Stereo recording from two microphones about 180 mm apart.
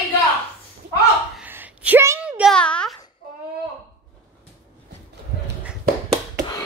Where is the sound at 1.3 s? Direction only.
10° right (ahead or behind).